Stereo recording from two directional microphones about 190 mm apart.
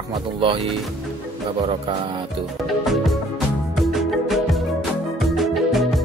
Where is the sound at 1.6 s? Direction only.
30° right (ahead or behind).